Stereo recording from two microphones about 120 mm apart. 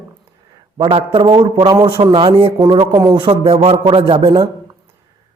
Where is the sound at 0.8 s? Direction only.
45° right (ahead or behind).